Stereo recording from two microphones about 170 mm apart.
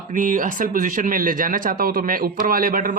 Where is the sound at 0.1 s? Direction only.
50° right (ahead or behind).